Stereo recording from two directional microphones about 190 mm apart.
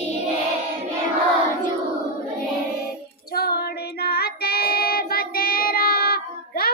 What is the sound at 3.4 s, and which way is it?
Child singing, 55° left (ahead or behind).